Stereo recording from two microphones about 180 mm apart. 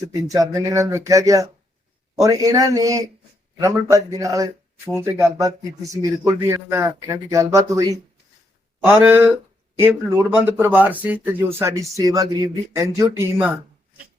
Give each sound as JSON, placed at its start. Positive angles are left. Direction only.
{"t": 0.0, "sound": "speech", "side_deg": -20}